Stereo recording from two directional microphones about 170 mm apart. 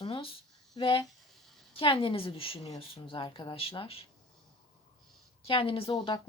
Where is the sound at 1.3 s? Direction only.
Centre (ahead or behind).